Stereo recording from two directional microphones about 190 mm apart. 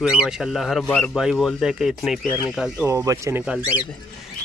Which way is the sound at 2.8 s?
15° right (ahead or behind).